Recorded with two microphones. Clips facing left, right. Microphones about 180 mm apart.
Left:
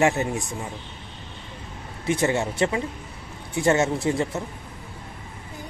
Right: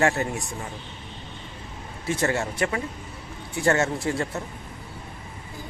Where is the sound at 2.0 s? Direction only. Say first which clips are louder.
Left 2 dB; 20° left (ahead or behind).